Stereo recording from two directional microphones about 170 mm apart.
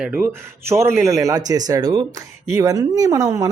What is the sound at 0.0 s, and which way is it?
Speech, 10° right (ahead or behind).